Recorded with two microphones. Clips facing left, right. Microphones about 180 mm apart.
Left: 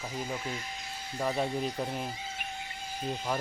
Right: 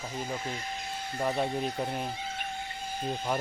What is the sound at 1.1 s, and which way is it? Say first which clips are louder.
Speech: right 1 dB; centre (ahead or behind).